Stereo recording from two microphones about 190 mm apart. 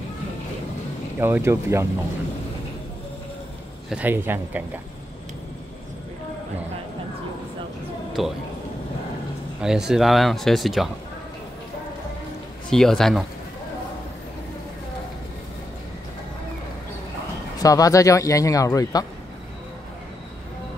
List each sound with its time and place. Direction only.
1.2 s a man's voice: 15° right (ahead or behind)
3.9 s a man's voice: 10° right (ahead or behind)
8.2 s speech: centre (ahead or behind)
9.6 s speech: 5° right (ahead or behind)
12.7 s speech: centre (ahead or behind)
17.6 s speech: 20° left (ahead or behind)